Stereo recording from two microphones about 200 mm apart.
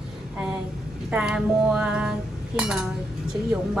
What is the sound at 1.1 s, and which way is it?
Cutlery, 5° right (ahead or behind).